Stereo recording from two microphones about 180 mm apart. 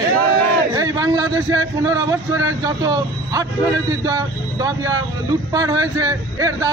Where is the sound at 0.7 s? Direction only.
20° right (ahead or behind).